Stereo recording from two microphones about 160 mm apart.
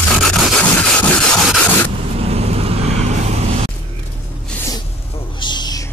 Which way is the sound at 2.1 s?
40° right (ahead or behind).